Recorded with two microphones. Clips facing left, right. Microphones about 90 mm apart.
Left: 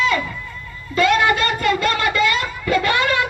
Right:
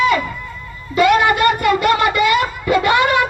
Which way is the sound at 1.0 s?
15° right (ahead or behind).